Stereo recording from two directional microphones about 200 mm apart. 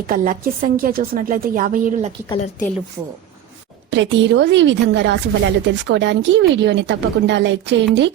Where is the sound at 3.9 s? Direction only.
65° right (ahead or behind).